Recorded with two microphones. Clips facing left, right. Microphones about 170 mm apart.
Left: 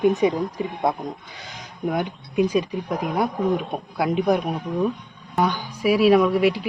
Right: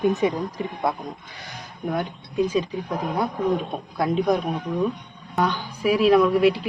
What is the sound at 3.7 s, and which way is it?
A woman's voice, 10° left (ahead or behind).